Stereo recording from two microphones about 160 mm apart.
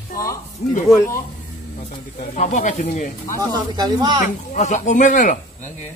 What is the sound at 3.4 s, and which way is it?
Speech, 25° right (ahead or behind).